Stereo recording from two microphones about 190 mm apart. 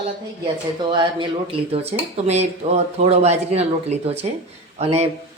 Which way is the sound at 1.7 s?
30° right (ahead or behind).